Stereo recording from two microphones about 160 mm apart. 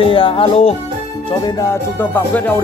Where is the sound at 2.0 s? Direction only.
10° left (ahead or behind).